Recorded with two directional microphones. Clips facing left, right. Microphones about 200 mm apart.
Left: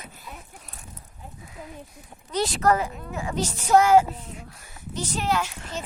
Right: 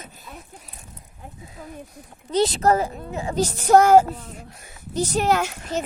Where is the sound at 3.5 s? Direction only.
45° right (ahead or behind).